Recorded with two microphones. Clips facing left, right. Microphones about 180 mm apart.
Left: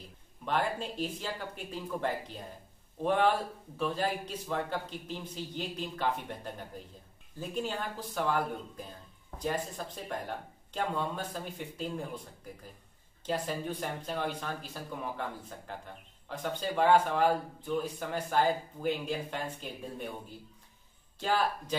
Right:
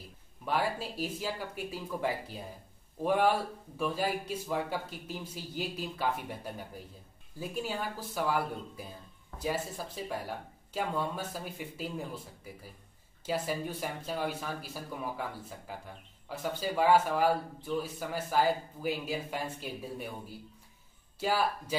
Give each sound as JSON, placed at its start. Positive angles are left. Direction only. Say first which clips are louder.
{"t": 0.5, "sound": "speech", "louder": "even", "side_deg": -5}
{"t": 13.2, "sound": "speech", "louder": "right 1 dB", "side_deg": -5}